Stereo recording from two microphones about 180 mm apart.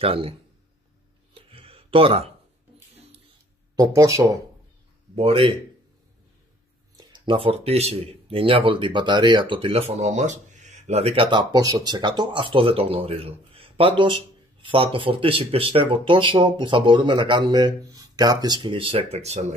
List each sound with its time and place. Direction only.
0.0 s speech: 30° right (ahead or behind)
1.3 s a sound: 30° right (ahead or behind)
3.7 s speech: 20° right (ahead or behind)
5.1 s speech: 30° right (ahead or behind)
7.0 s speech: 25° right (ahead or behind)